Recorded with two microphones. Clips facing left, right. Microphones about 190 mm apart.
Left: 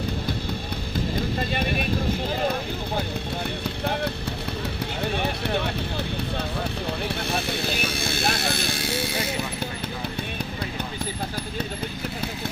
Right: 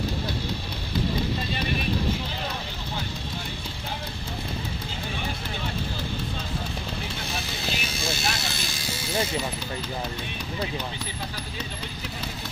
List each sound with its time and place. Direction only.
1.5 s vehicle: 55° left (ahead or behind)
5.1 s a sound: 65° left (ahead or behind)
7.2 s vehicle: 60° left (ahead or behind)